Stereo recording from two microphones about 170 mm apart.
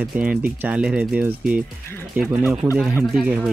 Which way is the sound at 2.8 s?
5° right (ahead or behind).